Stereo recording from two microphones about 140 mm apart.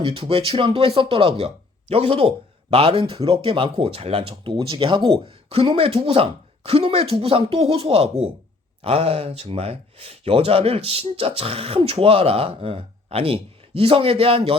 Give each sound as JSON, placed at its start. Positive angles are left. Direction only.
{"t": 0.0, "sound": "speech", "side_deg": -40}